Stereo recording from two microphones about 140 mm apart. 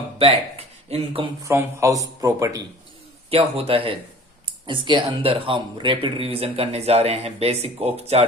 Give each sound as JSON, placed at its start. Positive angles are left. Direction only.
{"t": 0.2, "sound": "speech", "side_deg": -45}
{"t": 1.5, "sound": "a man's voice", "side_deg": -20}
{"t": 3.2, "sound": "speech", "side_deg": -45}